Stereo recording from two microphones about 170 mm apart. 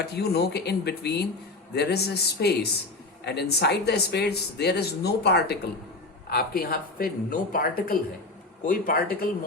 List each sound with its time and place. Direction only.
0.0 s speech: 70° left (ahead or behind)
6.3 s speech: 60° left (ahead or behind)